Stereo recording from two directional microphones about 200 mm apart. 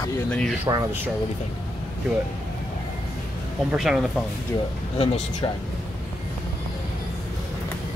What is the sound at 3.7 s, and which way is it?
Speech, centre (ahead or behind).